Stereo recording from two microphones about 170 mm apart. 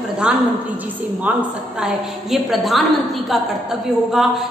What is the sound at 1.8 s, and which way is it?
A woman's voice, centre (ahead or behind).